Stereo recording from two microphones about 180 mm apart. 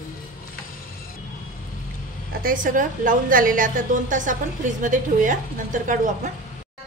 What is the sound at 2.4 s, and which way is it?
A woman's voice, 50° right (ahead or behind).